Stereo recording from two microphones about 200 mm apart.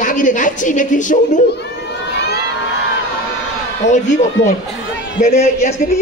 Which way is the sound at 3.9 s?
35° left (ahead or behind).